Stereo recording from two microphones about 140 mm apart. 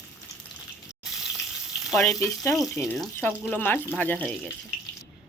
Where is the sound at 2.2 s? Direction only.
20° left (ahead or behind).